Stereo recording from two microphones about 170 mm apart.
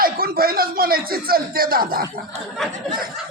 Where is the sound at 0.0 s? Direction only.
60° right (ahead or behind).